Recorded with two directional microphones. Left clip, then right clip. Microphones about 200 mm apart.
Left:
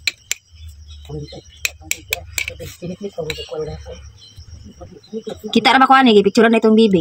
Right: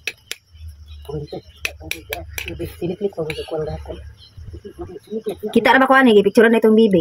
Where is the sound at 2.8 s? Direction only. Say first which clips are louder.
Right 7 dB; 45° right (ahead or behind).